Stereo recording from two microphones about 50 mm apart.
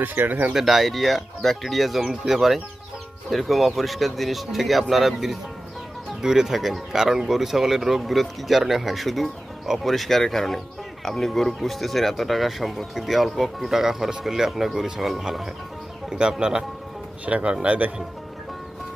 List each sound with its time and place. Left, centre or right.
0.0 s speech: right
0.6 s speech: centre
16.1 s speech: centre